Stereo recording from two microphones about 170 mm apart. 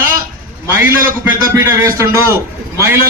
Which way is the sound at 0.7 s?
15° right (ahead or behind).